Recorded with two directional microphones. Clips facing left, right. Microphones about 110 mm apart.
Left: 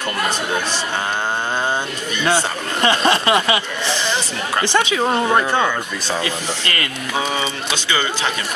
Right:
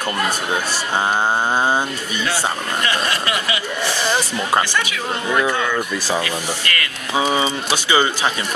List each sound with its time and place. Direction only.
2.8 s speech: 30° left (ahead or behind)
7.2 s speech: 15° right (ahead or behind)